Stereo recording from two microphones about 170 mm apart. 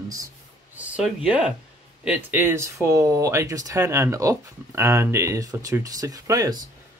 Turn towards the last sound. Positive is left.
turn(degrees=-20)  # may be behind; listen again after turning